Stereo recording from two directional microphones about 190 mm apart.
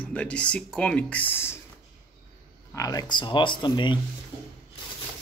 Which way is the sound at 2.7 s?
20° left (ahead or behind).